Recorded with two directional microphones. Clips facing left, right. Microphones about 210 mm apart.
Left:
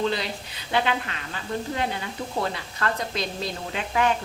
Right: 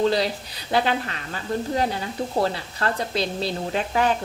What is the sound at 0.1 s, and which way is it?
Speech, 35° right (ahead or behind).